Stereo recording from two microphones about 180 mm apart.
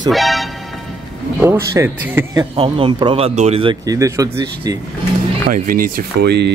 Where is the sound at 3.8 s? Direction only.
15° right (ahead or behind).